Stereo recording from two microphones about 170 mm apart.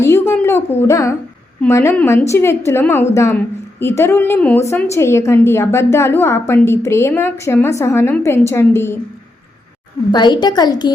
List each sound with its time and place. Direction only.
0.0 s a woman's voice: 15° left (ahead or behind)
10.1 s a woman's voice: 25° left (ahead or behind)